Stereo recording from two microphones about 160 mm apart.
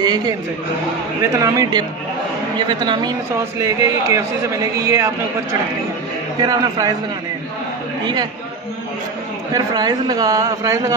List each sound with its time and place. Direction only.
0.0 s speech: 25° right (ahead or behind)
1.3 s a man's voice: 20° right (ahead or behind)
8.0 s a man's voice: 25° right (ahead or behind)
9.5 s a man's voice: 25° right (ahead or behind)